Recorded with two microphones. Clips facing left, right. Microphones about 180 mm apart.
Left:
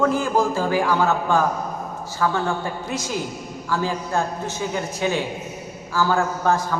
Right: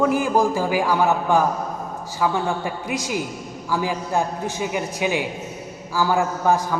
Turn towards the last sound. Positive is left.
turn(degrees=-15)  # may be behind; listen again after turning